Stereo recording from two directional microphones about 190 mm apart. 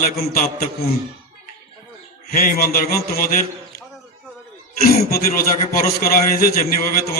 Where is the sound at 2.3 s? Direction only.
50° left (ahead or behind).